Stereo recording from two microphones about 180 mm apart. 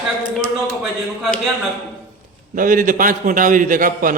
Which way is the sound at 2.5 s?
50° right (ahead or behind).